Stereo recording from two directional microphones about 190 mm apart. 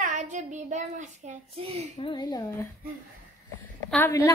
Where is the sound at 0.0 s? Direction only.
40° right (ahead or behind).